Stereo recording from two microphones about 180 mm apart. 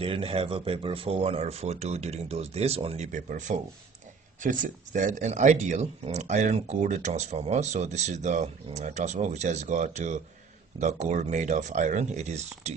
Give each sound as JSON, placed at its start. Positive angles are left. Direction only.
{"t": 0.0, "sound": "speech", "side_deg": -30}